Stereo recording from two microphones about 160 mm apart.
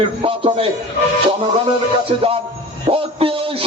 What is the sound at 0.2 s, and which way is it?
Speech, 35° right (ahead or behind).